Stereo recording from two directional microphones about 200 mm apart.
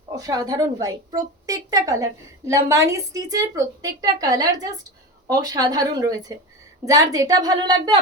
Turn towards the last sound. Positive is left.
turn(degrees=-20)  # may be behind; listen again after turning